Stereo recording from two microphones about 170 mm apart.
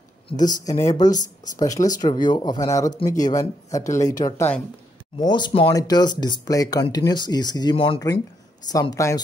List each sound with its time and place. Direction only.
0.3 s speech: 25° left (ahead or behind)